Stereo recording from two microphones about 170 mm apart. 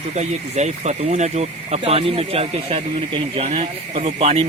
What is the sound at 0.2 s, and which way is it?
Speech, 40° right (ahead or behind).